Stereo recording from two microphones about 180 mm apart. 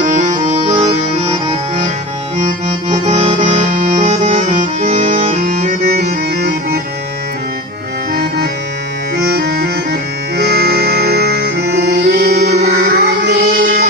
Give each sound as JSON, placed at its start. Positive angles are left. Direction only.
{"t": 0.7, "sound": "music", "side_deg": -35}
{"t": 2.3, "sound": "accordion", "side_deg": -40}
{"t": 5.3, "sound": "music", "side_deg": -50}
{"t": 9.1, "sound": "music", "side_deg": -65}